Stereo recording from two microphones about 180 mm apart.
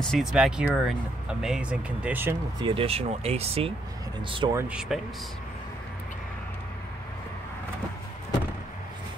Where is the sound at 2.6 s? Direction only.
30° right (ahead or behind).